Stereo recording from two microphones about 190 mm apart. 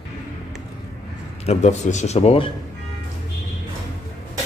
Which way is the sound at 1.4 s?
35° left (ahead or behind).